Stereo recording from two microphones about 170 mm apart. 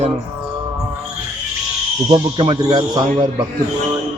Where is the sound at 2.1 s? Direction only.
25° right (ahead or behind).